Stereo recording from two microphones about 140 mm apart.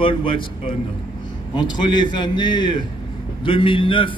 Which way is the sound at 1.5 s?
35° left (ahead or behind).